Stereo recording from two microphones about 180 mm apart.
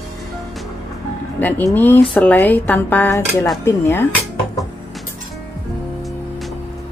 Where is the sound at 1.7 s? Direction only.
10° left (ahead or behind).